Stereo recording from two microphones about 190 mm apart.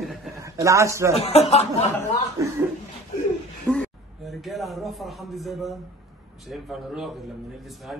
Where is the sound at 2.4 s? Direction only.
15° right (ahead or behind).